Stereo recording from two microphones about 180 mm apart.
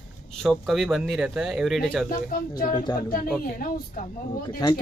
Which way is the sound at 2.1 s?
50° left (ahead or behind).